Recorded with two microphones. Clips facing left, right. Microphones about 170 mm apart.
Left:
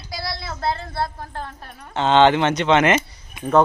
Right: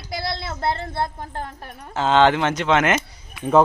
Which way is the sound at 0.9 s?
20° right (ahead or behind).